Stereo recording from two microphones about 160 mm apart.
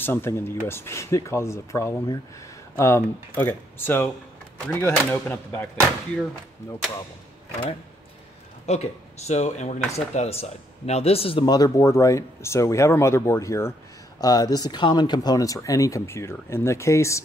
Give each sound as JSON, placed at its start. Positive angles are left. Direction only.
{"t": 0.0, "sound": "speech", "side_deg": 15}
{"t": 8.6, "sound": "speech", "side_deg": 45}